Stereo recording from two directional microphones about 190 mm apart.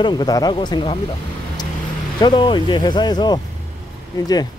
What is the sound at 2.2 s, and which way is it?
Speech, 25° left (ahead or behind).